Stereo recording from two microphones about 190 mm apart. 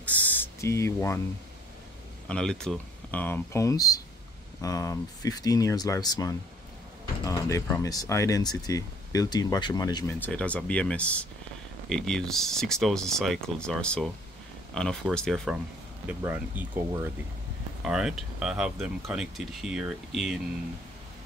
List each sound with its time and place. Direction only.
0.0 s a sound: 10° left (ahead or behind)
2.2 s speech: 5° left (ahead or behind); by 10.1 s 20° left (ahead or behind)
10.2 s speech: 5° left (ahead or behind)
16.1 s speech: 10° right (ahead or behind)
17.8 s speech: 5° right (ahead or behind)